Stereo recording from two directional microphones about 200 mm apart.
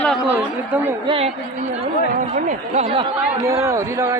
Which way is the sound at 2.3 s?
35° right (ahead or behind).